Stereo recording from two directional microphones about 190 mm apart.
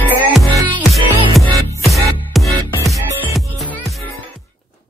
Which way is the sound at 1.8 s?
Centre (ahead or behind).